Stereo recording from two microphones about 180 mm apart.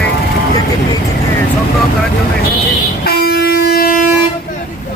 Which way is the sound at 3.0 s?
60° left (ahead or behind).